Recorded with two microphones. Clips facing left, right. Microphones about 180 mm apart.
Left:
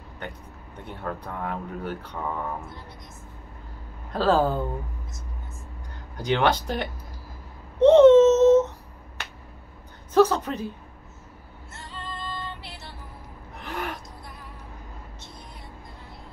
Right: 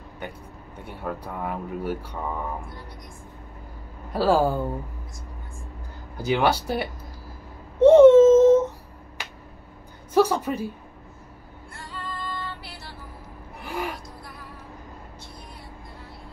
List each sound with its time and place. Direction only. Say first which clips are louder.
0.2 s speech: right 1 dB; 10° right (ahead or behind)
4.1 s speech: right 1 dB; 10° right (ahead or behind)
6.1 s speech: right 1 dB; 10° right (ahead or behind)
7.8 s baby cry: right 2 dB; 10° right (ahead or behind)
10.1 s a sound: left 1 dB; 10° right (ahead or behind)
11.7 s music: right 2 dB; 25° left (ahead or behind)
13.6 s gasp: right 2 dB; 10° right (ahead or behind)